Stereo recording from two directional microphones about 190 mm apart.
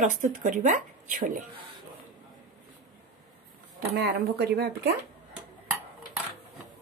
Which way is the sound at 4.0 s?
55° right (ahead or behind).